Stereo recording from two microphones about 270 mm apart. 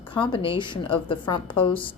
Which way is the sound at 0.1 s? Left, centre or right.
Centre.